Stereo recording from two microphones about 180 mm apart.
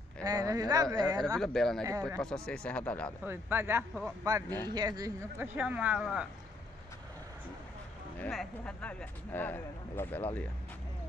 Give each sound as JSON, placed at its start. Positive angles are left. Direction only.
{"t": 0.2, "sound": "a woman's voice", "side_deg": -20}
{"t": 1.4, "sound": "speech", "side_deg": 0}
{"t": 1.9, "sound": "a woman's voice", "side_deg": -20}
{"t": 2.1, "sound": "speech", "side_deg": 5}
{"t": 3.3, "sound": "speech", "side_deg": -10}
{"t": 4.6, "sound": "a woman's voice", "side_deg": -25}
{"t": 5.6, "sound": "speech", "side_deg": -10}
{"t": 8.2, "sound": "speech", "side_deg": 5}